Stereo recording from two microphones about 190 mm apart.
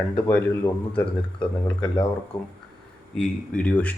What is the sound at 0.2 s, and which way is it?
Speech, 10° left (ahead or behind).